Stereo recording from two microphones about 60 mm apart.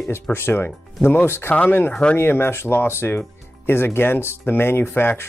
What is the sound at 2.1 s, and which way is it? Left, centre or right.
Speech, left.